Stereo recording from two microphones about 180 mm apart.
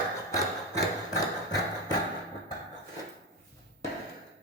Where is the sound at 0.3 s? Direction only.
20° left (ahead or behind).